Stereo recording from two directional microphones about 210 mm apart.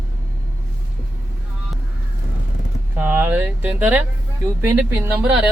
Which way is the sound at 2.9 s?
10° right (ahead or behind).